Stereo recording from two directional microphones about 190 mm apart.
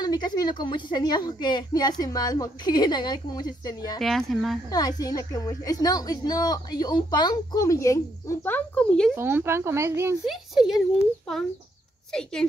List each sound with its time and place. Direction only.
0.0 s a woman's voice: 20° left (ahead or behind)
4.0 s speech: centre (ahead or behind)
4.6 s a woman's voice: 20° left (ahead or behind)
9.1 s speech: 10° right (ahead or behind)
10.2 s speech: centre (ahead or behind)
12.1 s speech: 5° left (ahead or behind)